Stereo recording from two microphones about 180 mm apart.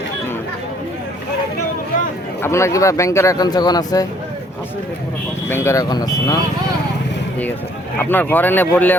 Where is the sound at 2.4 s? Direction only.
15° left (ahead or behind).